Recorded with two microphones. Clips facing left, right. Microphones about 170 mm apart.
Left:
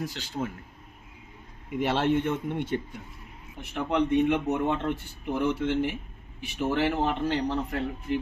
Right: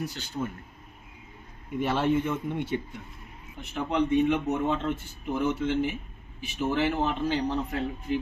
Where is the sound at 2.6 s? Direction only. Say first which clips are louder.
Left 1 dB; 50° left (ahead or behind).